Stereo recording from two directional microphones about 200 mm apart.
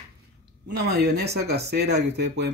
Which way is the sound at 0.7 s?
55° right (ahead or behind).